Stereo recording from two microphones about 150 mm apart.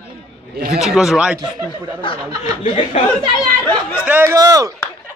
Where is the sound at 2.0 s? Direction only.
35° left (ahead or behind).